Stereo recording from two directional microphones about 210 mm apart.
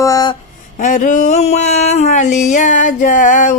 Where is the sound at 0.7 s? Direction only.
40° left (ahead or behind).